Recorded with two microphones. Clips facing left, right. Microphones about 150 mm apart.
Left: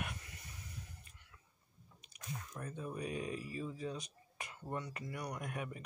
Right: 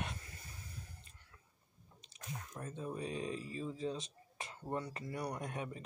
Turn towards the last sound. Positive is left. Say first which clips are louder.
# right 1 dB
turn(degrees=-30)  # may be behind; listen again after turning